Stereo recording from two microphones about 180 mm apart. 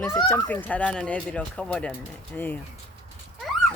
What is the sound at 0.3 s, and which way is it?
Speech, 10° left (ahead or behind).